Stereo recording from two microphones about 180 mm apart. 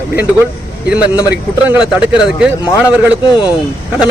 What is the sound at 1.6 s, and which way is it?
Speech, 5° right (ahead or behind).